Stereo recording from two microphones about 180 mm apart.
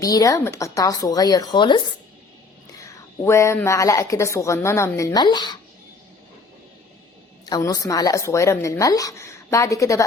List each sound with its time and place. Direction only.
0.0 s speech: 20° left (ahead or behind)
2.8 s speech: 15° left (ahead or behind)
7.4 s speech: 20° left (ahead or behind)